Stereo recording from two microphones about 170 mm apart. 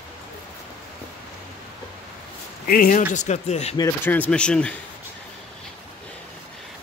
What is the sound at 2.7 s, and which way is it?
Speech, 55° left (ahead or behind).